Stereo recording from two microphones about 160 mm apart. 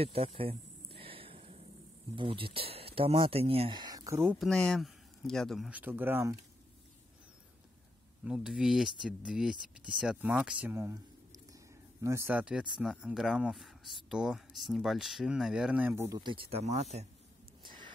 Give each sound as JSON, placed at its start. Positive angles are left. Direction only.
{"t": 0.0, "sound": "speech", "side_deg": -35}
{"t": 1.0, "sound": "a sound", "side_deg": -35}
{"t": 2.1, "sound": "speech", "side_deg": -35}
{"t": 4.4, "sound": "speech", "side_deg": 5}
{"t": 5.7, "sound": "speech", "side_deg": -10}
{"t": 8.2, "sound": "speech", "side_deg": -5}
{"t": 16.2, "sound": "speech", "side_deg": -30}